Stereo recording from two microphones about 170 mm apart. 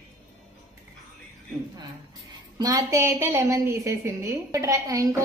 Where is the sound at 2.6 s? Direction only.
20° right (ahead or behind).